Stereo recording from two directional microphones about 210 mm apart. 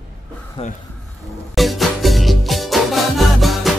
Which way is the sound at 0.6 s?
25° left (ahead or behind).